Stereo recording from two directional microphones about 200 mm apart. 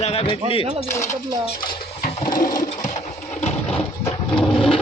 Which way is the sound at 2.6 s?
40° left (ahead or behind).